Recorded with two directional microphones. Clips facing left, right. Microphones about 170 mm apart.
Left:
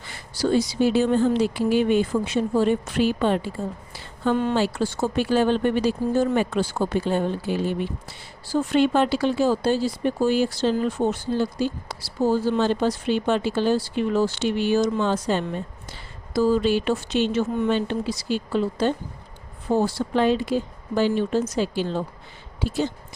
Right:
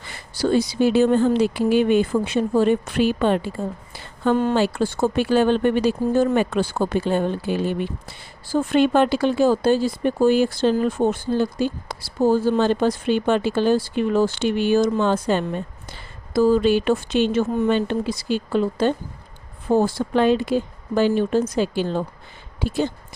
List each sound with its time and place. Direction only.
0.5 s speech: 60° right (ahead or behind)
3.9 s a sound: 50° right (ahead or behind)
4.5 s a woman's voice: 55° right (ahead or behind)